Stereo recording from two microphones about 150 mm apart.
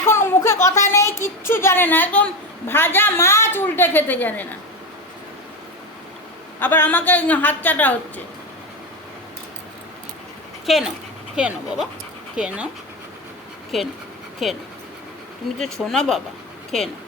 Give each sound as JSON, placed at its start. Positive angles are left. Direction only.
{"t": 0.0, "sound": "a sound", "side_deg": 15}
{"t": 2.6, "sound": "a woman's voice", "side_deg": 15}
{"t": 6.6, "sound": "a woman's voice", "side_deg": 15}
{"t": 10.7, "sound": "speech", "side_deg": 0}
{"t": 13.7, "sound": "speech", "side_deg": 0}